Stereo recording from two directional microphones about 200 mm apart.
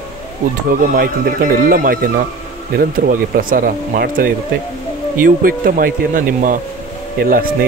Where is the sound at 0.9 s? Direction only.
45° right (ahead or behind).